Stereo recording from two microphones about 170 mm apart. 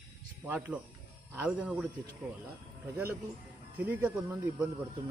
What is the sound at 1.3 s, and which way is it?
Speech, 5° right (ahead or behind).